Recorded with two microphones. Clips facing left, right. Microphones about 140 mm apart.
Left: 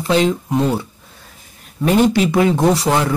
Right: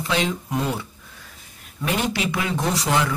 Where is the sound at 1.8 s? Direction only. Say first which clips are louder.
Left 10 dB; 40° left (ahead or behind).